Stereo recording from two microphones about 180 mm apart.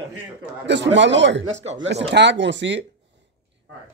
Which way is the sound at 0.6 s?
80° right.